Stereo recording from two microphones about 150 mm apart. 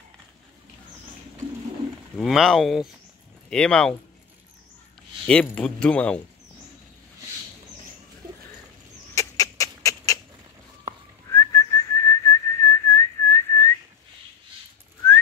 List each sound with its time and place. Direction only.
2.1 s speech: centre (ahead or behind)
5.2 s speech: 10° left (ahead or behind)
9.1 s rodents: 20° left (ahead or behind)
11.2 s whistling: 20° left (ahead or behind)